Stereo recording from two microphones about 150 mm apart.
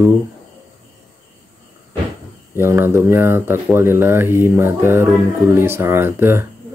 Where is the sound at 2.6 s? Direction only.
15° right (ahead or behind).